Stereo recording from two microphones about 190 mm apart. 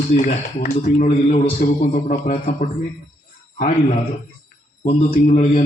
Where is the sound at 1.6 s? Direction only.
40° left (ahead or behind).